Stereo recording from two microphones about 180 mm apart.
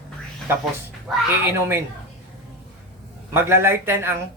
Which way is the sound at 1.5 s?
15° right (ahead or behind).